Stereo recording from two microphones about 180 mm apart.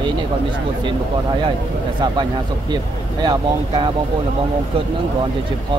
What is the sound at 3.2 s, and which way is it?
Speech, 25° right (ahead or behind).